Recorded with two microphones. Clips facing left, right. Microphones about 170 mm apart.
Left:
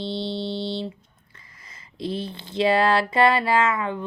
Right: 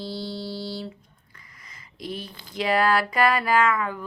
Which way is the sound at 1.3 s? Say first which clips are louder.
Even; 25° left (ahead or behind).